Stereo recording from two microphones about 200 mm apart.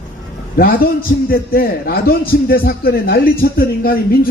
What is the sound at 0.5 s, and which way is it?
A man's voice, 45° left (ahead or behind).